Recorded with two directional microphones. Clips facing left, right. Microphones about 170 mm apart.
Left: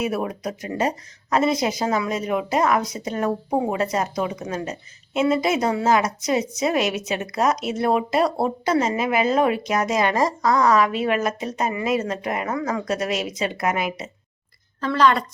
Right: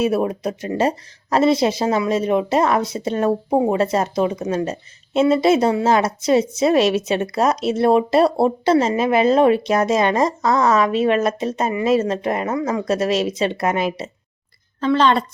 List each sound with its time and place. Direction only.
0.0 s a woman's voice: 30° right (ahead or behind)